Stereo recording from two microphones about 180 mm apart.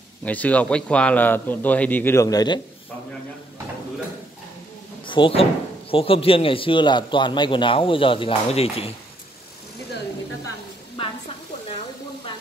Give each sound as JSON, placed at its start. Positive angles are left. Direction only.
{"t": 0.2, "sound": "a man's voice", "side_deg": 10}
{"t": 5.0, "sound": "speech", "side_deg": 30}